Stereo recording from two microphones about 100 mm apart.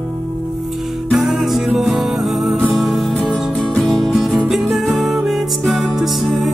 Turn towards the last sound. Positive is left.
turn(degrees=0)  # may be behind; listen again after turning